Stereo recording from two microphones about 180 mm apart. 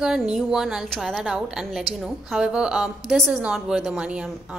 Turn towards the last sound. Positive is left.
turn(degrees=-5)  # may be behind; listen again after turning